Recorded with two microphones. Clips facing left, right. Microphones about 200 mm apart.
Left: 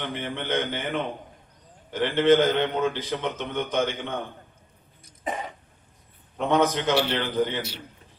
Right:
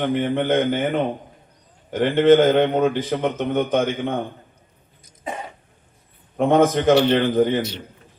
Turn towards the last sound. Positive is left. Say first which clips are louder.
# right 8 dB
turn(degrees=-50)  # may be behind; listen again after turning